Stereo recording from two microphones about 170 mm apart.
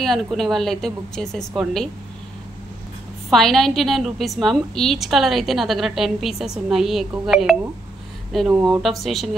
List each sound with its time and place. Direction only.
0.0 s a woman's voice: centre (ahead or behind)
3.3 s a woman's voice: centre (ahead or behind)